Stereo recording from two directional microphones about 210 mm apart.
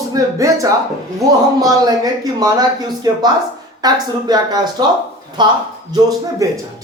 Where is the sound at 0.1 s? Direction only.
15° right (ahead or behind).